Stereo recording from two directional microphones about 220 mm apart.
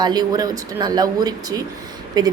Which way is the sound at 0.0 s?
20° right (ahead or behind).